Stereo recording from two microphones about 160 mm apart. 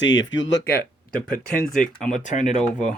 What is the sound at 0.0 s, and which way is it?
Speech, 90° left.